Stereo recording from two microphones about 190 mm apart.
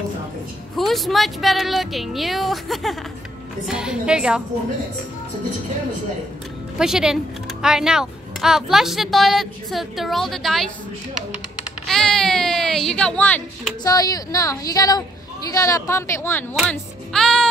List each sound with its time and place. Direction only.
0.7 s speech: centre (ahead or behind)
6.8 s speech: 5° right (ahead or behind)
11.9 s a woman's voice: 5° left (ahead or behind)
16.5 s music: centre (ahead or behind)